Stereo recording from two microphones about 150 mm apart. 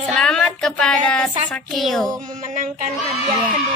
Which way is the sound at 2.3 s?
60° right (ahead or behind).